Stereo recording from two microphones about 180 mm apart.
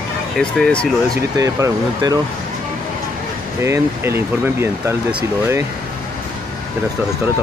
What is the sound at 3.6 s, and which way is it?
Speech, 15° right (ahead or behind).